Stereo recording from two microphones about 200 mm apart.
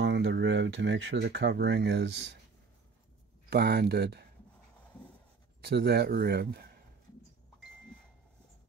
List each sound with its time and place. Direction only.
0.0 s speech: 60° right (ahead or behind)
3.4 s a man's voice: 55° right (ahead or behind)
5.6 s a man's voice: 55° right (ahead or behind)